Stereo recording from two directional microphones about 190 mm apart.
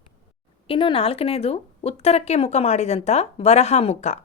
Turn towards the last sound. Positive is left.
turn(degrees=35)  # may be behind; listen again after turning